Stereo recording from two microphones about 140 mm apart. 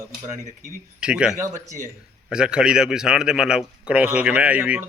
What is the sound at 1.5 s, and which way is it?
Speech, 65° right (ahead or behind).